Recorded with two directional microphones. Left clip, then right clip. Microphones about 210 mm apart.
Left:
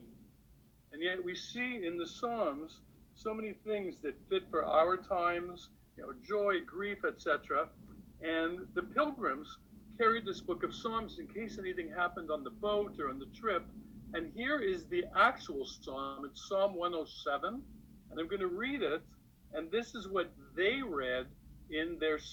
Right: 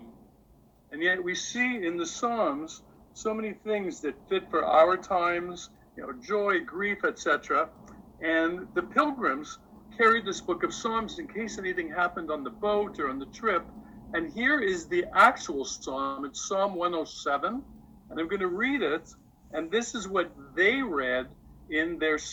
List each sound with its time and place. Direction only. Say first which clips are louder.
0.9 s a man's voice: right 10 dB; 15° right (ahead or behind)